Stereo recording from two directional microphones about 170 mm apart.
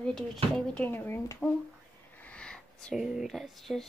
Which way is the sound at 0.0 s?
5° left (ahead or behind).